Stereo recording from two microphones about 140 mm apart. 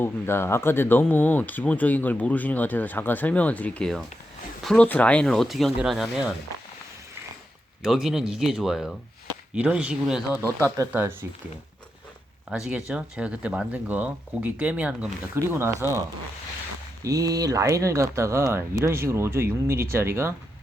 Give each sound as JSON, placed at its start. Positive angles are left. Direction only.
{"t": 0.0, "sound": "speech", "side_deg": 15}
{"t": 7.8, "sound": "speech", "side_deg": -5}
{"t": 10.9, "sound": "speech", "side_deg": -15}
{"t": 12.5, "sound": "speech", "side_deg": -5}